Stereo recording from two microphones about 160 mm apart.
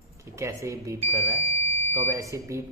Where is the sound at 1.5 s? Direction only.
40° right (ahead or behind).